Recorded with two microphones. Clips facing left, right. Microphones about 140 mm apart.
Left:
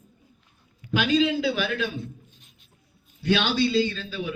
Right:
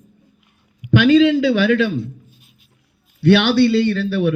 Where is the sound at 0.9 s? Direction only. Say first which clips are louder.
Right 10 dB; 75° right (ahead or behind).